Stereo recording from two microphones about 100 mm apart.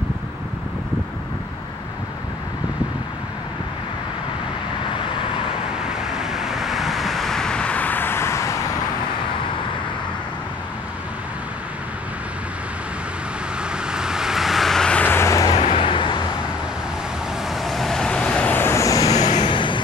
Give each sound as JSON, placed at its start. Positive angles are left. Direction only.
{"t": 4.9, "sound": "vehicle", "side_deg": 60}
{"t": 5.7, "sound": "vehicle", "side_deg": -5}
{"t": 13.6, "sound": "vehicle", "side_deg": -10}
{"t": 15.0, "sound": "vehicle", "side_deg": 25}
{"t": 15.5, "sound": "vehicle", "side_deg": 90}
{"t": 17.5, "sound": "vehicle", "side_deg": 0}
{"t": 18.6, "sound": "vehicle", "side_deg": 30}
{"t": 19.4, "sound": "vehicle", "side_deg": 55}